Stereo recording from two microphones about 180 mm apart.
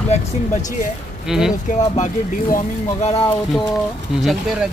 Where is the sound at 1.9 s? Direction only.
45° left (ahead or behind).